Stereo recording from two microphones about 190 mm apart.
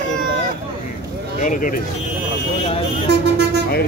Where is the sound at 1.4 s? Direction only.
45° left (ahead or behind).